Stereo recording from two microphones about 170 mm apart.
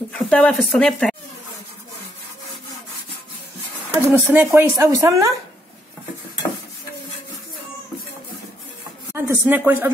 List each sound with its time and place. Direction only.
0.1 s speech: 5° left (ahead or behind)
3.9 s speech: 10° right (ahead or behind)
9.1 s speech: 15° right (ahead or behind)